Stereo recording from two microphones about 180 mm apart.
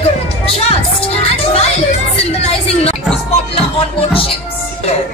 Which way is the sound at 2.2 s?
35° left (ahead or behind).